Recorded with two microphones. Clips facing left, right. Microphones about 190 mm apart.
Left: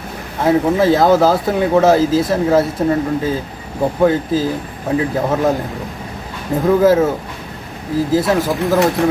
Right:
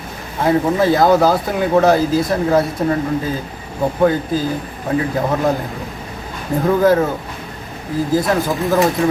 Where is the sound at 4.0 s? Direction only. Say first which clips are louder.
Left 1 dB; 5° left (ahead or behind).